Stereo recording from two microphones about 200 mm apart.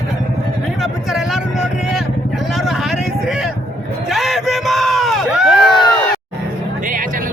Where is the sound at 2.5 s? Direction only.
Centre (ahead or behind).